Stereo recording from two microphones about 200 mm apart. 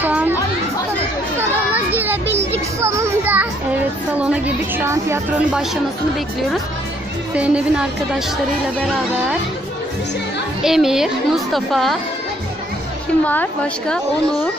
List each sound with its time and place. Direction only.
0.0 s chatter: 10° right (ahead or behind)
1.7 s children playing: 10° right (ahead or behind)
2.8 s child singing: 15° right (ahead or behind)
4.2 s a woman's voice: 10° right (ahead or behind)
7.3 s a child's voice: 5° right (ahead or behind)
10.6 s a child's voice: centre (ahead or behind)
13.2 s a woman's voice: 10° left (ahead or behind)